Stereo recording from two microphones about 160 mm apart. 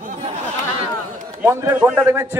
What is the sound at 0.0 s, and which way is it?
Chatter, 50° right (ahead or behind).